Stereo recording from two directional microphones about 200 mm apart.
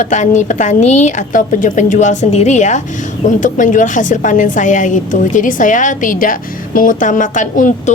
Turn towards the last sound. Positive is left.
turn(degrees=40)  # may be behind; listen again after turning